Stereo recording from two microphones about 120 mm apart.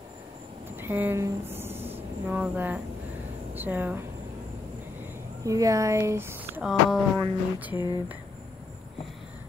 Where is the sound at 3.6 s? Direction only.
15° right (ahead or behind).